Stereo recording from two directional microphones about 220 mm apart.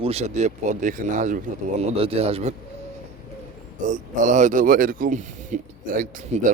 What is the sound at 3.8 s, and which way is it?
Speech, 35° right (ahead or behind).